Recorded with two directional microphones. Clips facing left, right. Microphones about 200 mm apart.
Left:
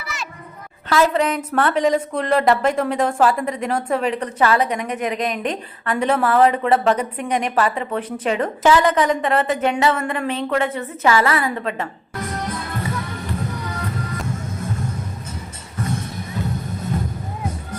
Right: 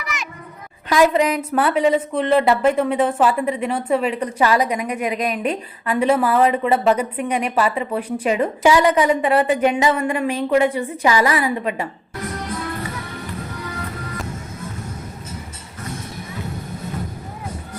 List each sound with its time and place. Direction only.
0.0 s music: 15° right (ahead or behind)
0.9 s a woman's voice: 15° right (ahead or behind)